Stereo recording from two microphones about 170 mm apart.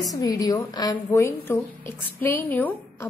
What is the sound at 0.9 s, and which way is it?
A woman's voice, 15° left (ahead or behind).